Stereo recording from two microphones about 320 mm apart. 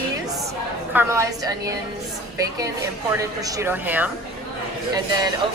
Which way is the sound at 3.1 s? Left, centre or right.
Centre.